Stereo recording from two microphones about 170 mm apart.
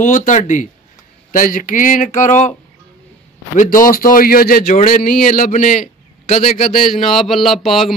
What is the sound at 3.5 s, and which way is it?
A man's voice, 55° left (ahead or behind).